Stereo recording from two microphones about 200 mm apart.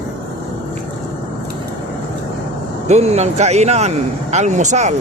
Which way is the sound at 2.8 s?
35° right (ahead or behind).